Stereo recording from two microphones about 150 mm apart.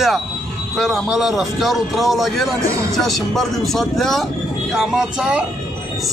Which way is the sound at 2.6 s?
20° right (ahead or behind).